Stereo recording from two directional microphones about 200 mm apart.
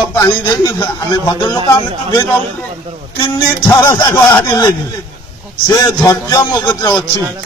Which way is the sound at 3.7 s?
15° left (ahead or behind).